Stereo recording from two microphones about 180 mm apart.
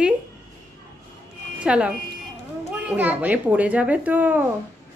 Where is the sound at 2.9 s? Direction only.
10° right (ahead or behind).